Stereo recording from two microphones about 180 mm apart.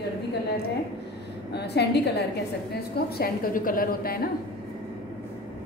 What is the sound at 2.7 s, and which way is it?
A woman's voice, 55° left (ahead or behind).